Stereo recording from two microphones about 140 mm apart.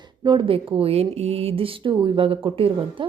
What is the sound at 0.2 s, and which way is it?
Speech, 35° right (ahead or behind).